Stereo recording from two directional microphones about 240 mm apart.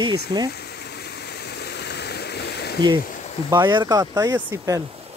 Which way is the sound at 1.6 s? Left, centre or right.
Left.